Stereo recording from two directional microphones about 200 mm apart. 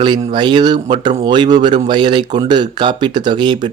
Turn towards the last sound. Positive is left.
turn(degrees=-20)  # may be behind; listen again after turning